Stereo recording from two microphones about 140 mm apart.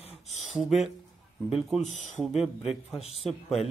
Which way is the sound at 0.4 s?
Centre (ahead or behind).